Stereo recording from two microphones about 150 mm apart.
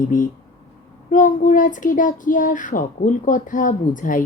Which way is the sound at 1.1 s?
60° left (ahead or behind).